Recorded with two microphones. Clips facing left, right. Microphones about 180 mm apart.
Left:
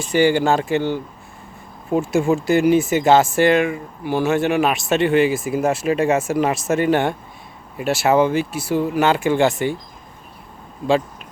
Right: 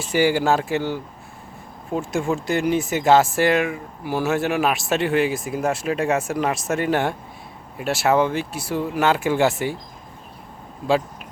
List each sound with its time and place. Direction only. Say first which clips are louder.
0.0 s speech: left 3 dB; 5° right (ahead or behind)
1.9 s speech: left 5 dB; 5° left (ahead or behind)